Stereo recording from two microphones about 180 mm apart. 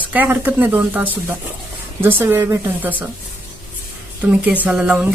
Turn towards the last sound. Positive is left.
turn(degrees=-5)  # may be behind; listen again after turning